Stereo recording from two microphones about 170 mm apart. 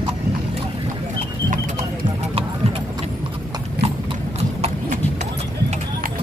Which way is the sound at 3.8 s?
75° right (ahead or behind).